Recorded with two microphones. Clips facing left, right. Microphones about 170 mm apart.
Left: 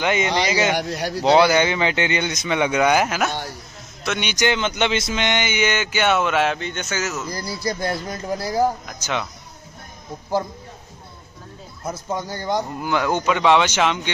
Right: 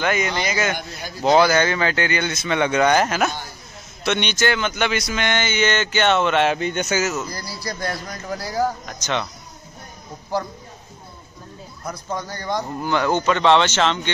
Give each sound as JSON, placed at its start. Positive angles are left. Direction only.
{"t": 0.0, "sound": "a man's voice", "side_deg": 20}
{"t": 0.7, "sound": "speech", "side_deg": 75}
{"t": 1.4, "sound": "speech", "side_deg": 15}
{"t": 6.6, "sound": "a man's voice", "side_deg": -10}
{"t": 7.8, "sound": "speech", "side_deg": 25}
{"t": 11.8, "sound": "a man's voice", "side_deg": 20}
{"t": 12.7, "sound": "speech", "side_deg": 10}